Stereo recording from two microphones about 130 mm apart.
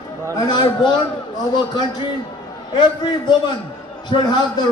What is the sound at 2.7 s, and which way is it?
A man's voice, 40° left (ahead or behind).